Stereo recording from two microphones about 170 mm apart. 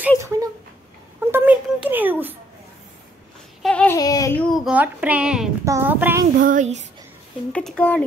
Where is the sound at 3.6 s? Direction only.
5° left (ahead or behind).